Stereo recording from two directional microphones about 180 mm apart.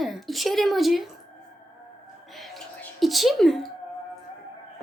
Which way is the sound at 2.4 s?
Centre (ahead or behind).